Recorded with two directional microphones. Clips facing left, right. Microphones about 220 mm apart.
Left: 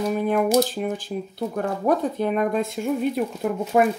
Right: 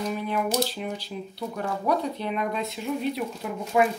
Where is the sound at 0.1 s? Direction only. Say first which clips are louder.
Left 10 dB; 50° left (ahead or behind).